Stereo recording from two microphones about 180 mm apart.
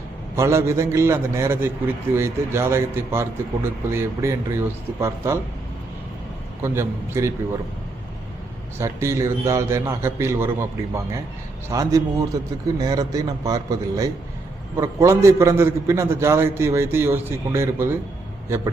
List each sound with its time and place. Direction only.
0.3 s a man's voice: 15° right (ahead or behind)
6.6 s a man's voice: 15° right (ahead or behind)
8.8 s a man's voice: 15° right (ahead or behind)